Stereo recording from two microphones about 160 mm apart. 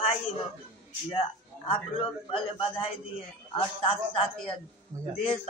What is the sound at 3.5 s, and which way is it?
Speech, 35° left (ahead or behind).